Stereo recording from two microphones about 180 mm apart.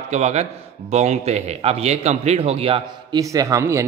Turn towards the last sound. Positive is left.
turn(degrees=-15)  # may be behind; listen again after turning